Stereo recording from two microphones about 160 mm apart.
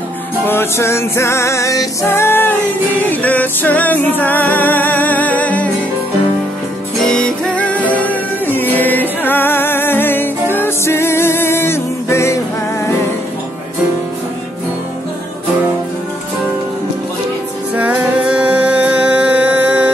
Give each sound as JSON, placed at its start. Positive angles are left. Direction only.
{"t": 0.5, "sound": "music", "side_deg": 15}
{"t": 7.0, "sound": "music", "side_deg": 5}
{"t": 17.7, "sound": "music", "side_deg": -10}